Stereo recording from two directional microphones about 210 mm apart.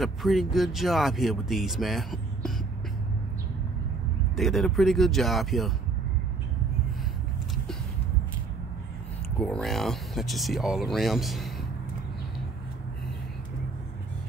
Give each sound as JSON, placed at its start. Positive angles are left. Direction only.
{"t": 0.0, "sound": "speech", "side_deg": 0}
{"t": 4.4, "sound": "speech", "side_deg": 0}
{"t": 9.4, "sound": "speech", "side_deg": 5}